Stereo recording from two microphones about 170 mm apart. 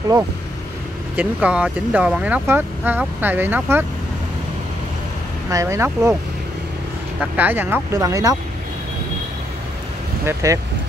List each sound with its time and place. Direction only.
1.1 s speech: 10° right (ahead or behind)
5.5 s speech: 15° right (ahead or behind)
7.2 s speech: 10° right (ahead or behind)
10.2 s speech: 20° right (ahead or behind)